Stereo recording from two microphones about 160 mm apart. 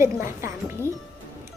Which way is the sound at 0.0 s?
15° right (ahead or behind).